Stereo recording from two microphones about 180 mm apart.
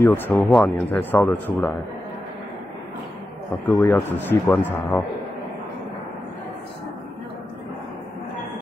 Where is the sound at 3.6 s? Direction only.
15° left (ahead or behind).